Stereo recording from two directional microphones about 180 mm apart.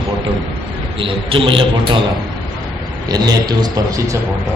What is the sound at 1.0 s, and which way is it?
A man's voice, 30° right (ahead or behind).